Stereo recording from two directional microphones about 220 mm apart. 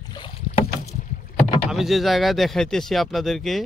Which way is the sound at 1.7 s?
Centre (ahead or behind).